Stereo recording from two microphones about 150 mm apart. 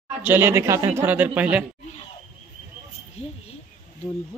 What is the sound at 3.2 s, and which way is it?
Speech, 45° left (ahead or behind).